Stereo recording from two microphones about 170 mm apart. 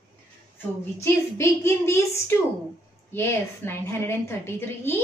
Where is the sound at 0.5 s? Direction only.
15° left (ahead or behind).